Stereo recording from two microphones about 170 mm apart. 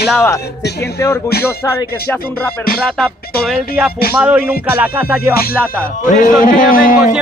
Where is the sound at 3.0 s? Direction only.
5° left (ahead or behind).